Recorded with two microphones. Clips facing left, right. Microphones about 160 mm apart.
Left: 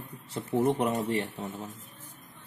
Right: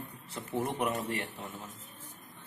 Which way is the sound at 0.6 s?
30° left (ahead or behind).